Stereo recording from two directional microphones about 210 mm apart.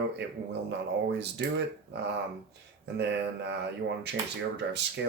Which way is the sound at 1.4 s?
55° right (ahead or behind).